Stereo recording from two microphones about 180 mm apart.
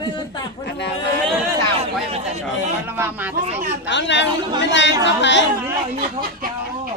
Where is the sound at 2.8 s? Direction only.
10° right (ahead or behind).